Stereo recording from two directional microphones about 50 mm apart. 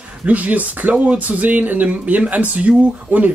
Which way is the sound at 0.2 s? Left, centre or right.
Right.